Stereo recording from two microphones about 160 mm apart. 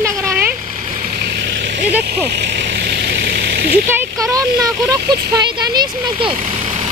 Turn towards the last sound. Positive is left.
turn(degrees=-25)  # may be behind; listen again after turning